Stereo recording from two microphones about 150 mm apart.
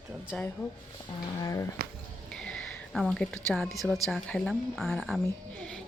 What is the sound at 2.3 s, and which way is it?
A woman's voice, 5° left (ahead or behind).